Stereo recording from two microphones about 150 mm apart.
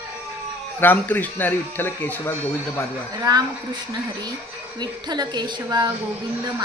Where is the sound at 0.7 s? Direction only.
15° left (ahead or behind).